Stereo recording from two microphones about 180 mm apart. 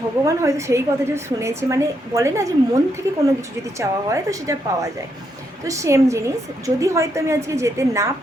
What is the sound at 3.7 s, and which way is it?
A woman's voice, 20° right (ahead or behind).